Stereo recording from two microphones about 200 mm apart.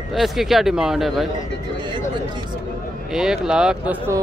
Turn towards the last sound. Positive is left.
turn(degrees=-5)  # may be behind; listen again after turning